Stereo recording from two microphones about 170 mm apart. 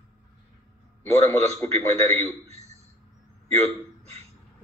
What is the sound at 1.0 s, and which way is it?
Speech, 10° left (ahead or behind).